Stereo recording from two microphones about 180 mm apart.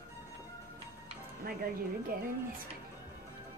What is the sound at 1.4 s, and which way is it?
Speech, 55° right (ahead or behind).